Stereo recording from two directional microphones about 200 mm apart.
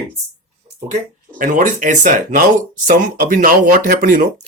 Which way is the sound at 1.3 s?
40° right (ahead or behind).